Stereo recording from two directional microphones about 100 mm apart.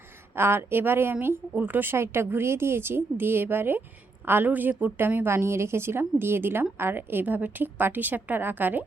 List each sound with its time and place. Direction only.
0.3 s a woman's voice: 25° right (ahead or behind)